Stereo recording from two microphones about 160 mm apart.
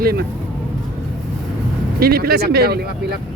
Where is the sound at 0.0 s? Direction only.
75° right (ahead or behind).